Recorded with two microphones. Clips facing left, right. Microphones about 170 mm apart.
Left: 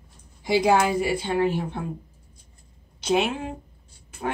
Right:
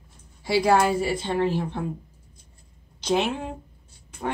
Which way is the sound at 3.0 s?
5° left (ahead or behind).